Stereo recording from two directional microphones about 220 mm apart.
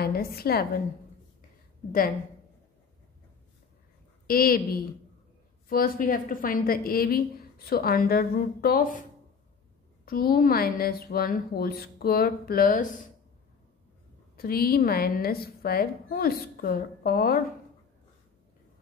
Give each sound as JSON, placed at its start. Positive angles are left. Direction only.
{"t": 0.0, "sound": "a woman's voice", "side_deg": 45}
{"t": 1.9, "sound": "a woman's voice", "side_deg": 40}
{"t": 4.3, "sound": "a woman's voice", "side_deg": 40}
{"t": 10.0, "sound": "a woman's voice", "side_deg": 40}
{"t": 14.3, "sound": "a woman's voice", "side_deg": 45}